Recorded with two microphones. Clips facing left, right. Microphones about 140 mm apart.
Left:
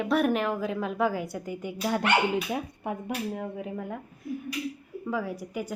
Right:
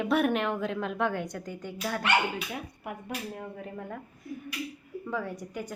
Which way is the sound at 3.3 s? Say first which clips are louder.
Left 5 dB; 10° left (ahead or behind).